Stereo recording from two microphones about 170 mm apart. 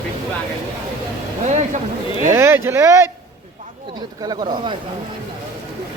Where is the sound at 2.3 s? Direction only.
15° right (ahead or behind).